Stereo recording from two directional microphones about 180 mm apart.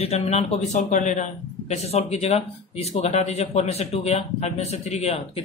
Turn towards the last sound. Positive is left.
turn(degrees=35)  # may be behind; listen again after turning